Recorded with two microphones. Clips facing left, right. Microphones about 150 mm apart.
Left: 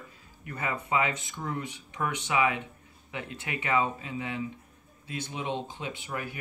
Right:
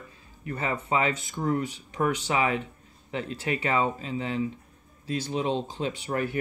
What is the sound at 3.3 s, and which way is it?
Speech, 35° right (ahead or behind).